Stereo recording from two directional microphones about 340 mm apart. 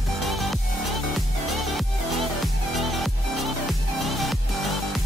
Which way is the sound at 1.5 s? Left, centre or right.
Centre.